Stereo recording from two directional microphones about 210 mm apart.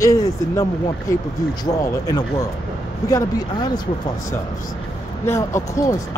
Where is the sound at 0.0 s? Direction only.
15° left (ahead or behind).